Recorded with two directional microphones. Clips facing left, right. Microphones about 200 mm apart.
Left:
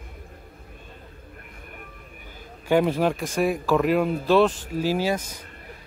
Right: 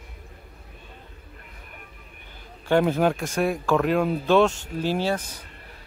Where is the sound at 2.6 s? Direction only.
5° left (ahead or behind).